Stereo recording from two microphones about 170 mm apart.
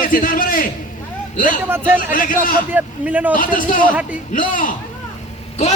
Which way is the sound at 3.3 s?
55° left (ahead or behind).